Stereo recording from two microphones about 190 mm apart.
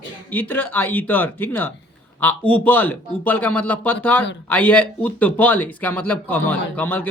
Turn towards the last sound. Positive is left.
turn(degrees=10)  # may be behind; listen again after turning